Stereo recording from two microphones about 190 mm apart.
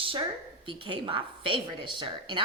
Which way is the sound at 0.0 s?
30° right (ahead or behind).